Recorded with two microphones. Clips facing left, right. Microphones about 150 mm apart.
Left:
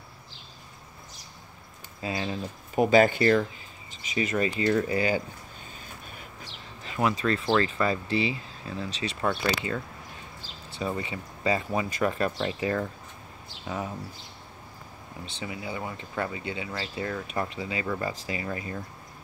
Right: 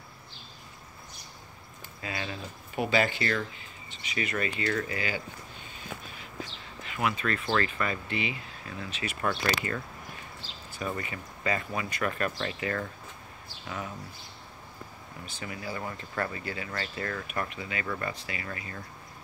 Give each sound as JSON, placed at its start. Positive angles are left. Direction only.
{"t": 2.0, "sound": "speech", "side_deg": 25}
{"t": 2.7, "sound": "speech", "side_deg": 45}
{"t": 3.9, "sound": "speech", "side_deg": 35}
{"t": 4.6, "sound": "speech", "side_deg": 20}
{"t": 4.9, "sound": "speech", "side_deg": 40}
{"t": 7.0, "sound": "speech", "side_deg": 30}
{"t": 9.2, "sound": "speech", "side_deg": 10}
{"t": 10.8, "sound": "speech", "side_deg": 25}
{"t": 12.4, "sound": "speech", "side_deg": 15}
{"t": 13.7, "sound": "speech", "side_deg": 30}
{"t": 15.2, "sound": "speech", "side_deg": 20}
{"t": 17.3, "sound": "speech", "side_deg": 30}